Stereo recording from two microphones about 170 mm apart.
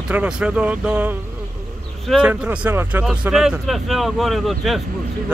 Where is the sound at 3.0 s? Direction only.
Centre (ahead or behind).